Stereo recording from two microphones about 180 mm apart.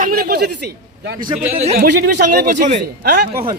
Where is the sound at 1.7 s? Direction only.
55° right (ahead or behind).